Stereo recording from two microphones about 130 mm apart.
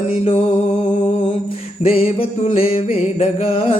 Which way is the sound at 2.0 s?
50° left (ahead or behind).